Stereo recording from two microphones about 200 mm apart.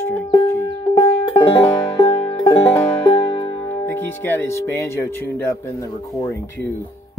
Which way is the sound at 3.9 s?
10° left (ahead or behind).